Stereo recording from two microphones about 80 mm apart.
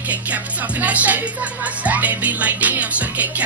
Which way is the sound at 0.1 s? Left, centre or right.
Centre.